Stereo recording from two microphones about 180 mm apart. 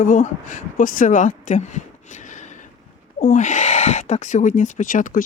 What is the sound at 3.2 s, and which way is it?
Speech, 45° left (ahead or behind).